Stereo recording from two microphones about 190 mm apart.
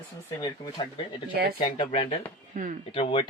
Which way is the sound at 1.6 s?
30° left (ahead or behind).